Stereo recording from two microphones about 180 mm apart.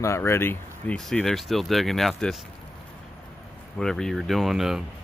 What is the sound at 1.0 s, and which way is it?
Speech, centre (ahead or behind).